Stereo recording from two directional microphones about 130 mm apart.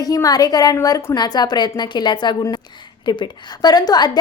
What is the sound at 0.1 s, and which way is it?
A woman's voice, 30° left (ahead or behind).